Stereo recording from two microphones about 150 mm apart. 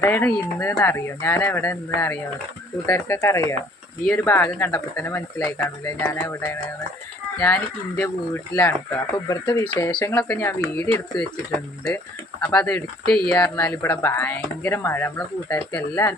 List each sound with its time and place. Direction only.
0.0 s speech: 10° left (ahead or behind)
6.1 s music: 20° left (ahead or behind)
7.3 s speech: 10° left (ahead or behind)
12.4 s speech: 10° left (ahead or behind)